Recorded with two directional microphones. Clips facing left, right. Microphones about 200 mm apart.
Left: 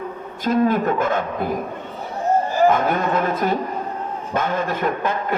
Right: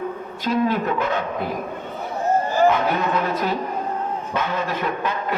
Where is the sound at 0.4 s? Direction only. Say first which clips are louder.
Left 3 dB; 50° left (ahead or behind).